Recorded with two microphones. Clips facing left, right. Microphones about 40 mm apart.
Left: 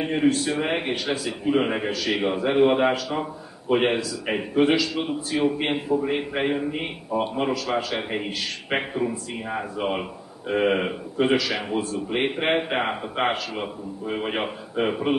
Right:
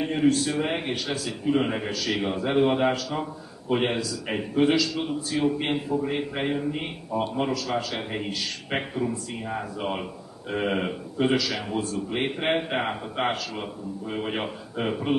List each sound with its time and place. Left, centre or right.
0.0 s a man's voice: centre